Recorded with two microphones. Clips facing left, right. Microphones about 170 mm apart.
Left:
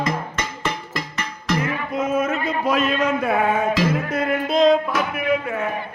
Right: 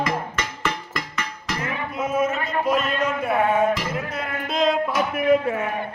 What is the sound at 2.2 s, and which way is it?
Music, 60° left (ahead or behind).